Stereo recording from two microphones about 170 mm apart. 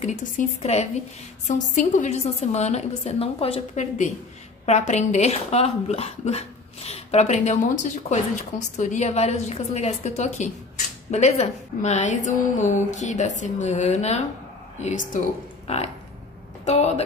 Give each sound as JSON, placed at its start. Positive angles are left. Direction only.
{"t": 0.0, "sound": "a woman's voice", "side_deg": 40}